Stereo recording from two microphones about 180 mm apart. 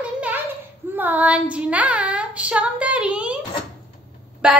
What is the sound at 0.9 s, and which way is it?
Child singing, 10° right (ahead or behind).